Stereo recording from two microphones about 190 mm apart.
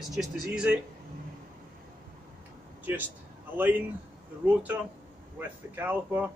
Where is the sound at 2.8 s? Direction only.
10° right (ahead or behind).